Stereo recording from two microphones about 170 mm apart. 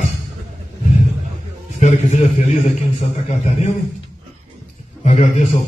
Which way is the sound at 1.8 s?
45° left (ahead or behind).